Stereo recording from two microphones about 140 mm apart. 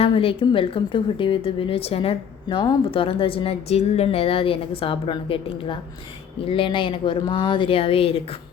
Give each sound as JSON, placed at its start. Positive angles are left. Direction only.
{"t": 0.0, "sound": "a woman's voice", "side_deg": 40}